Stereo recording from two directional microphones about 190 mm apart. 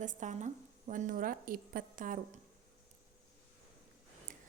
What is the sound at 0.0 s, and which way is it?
A woman's voice, 40° right (ahead or behind).